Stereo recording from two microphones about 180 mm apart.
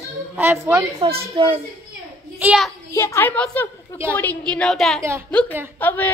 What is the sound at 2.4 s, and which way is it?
Speech, 5° right (ahead or behind).